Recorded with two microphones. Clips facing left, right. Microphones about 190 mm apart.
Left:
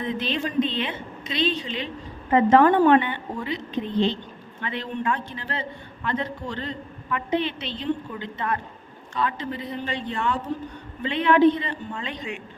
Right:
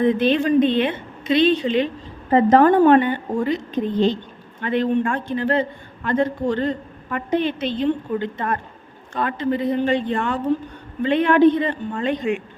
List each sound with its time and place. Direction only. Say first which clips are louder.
0.0 s a woman's voice: right 10 dB; 55° right (ahead or behind)
2.3 s a man's voice: right 3 dB; 40° right (ahead or behind)